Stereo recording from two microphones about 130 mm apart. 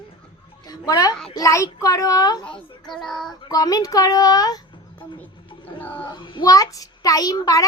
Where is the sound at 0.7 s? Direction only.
30° left (ahead or behind).